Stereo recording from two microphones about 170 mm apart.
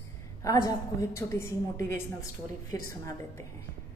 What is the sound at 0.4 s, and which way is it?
A woman's voice, 20° left (ahead or behind).